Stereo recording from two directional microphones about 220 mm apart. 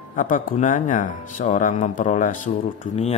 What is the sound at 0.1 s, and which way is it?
A man's voice, 35° left (ahead or behind).